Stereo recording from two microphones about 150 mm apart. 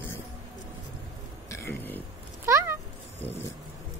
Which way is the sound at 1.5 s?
15° left (ahead or behind).